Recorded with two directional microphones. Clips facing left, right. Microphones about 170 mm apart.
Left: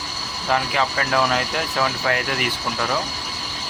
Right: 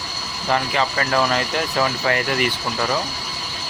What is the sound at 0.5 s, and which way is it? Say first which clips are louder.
Speech: right 1 dB; centre (ahead or behind).